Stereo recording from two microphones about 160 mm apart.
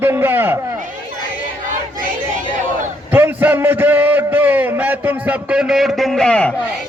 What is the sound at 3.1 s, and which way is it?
A man's voice, 10° right (ahead or behind).